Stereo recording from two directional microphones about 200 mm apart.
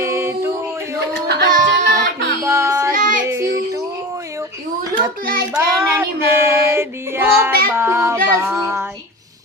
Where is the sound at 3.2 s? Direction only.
15° right (ahead or behind).